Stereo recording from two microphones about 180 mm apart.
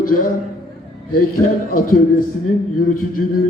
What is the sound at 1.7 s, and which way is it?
A man's voice, 50° left (ahead or behind).